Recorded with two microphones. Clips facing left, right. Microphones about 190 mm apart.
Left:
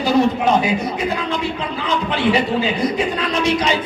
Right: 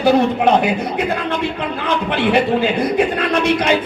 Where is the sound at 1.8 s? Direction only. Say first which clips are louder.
Right 1 dB; 60° right (ahead or behind).